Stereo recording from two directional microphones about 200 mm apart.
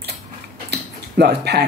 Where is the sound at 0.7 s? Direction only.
55° right (ahead or behind).